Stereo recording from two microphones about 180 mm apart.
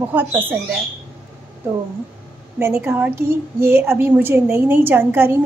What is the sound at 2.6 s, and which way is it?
A woman's voice, 15° right (ahead or behind).